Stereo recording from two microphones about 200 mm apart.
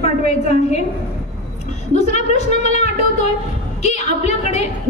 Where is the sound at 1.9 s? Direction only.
35° left (ahead or behind).